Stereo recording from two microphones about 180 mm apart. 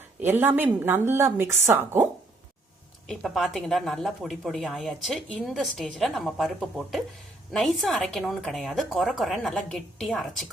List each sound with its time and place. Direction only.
0.2 s a woman's voice: 10° right (ahead or behind)
3.1 s a woman's voice: centre (ahead or behind)